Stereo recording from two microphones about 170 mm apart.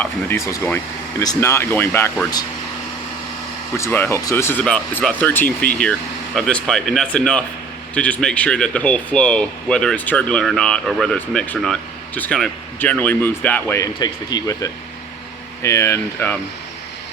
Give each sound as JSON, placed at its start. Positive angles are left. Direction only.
{"t": 0.0, "sound": "speech", "side_deg": 15}
{"t": 3.8, "sound": "speech", "side_deg": 15}